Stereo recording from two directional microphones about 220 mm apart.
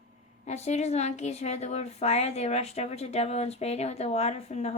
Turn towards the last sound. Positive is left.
turn(degrees=30)  # may be behind; listen again after turning